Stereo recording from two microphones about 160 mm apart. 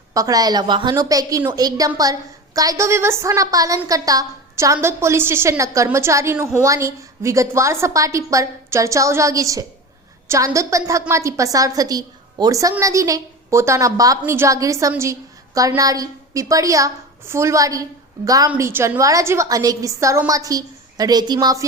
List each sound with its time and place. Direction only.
0.1 s a woman's voice: 20° right (ahead or behind)